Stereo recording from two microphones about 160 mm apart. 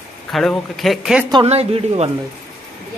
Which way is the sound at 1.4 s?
40° right (ahead or behind).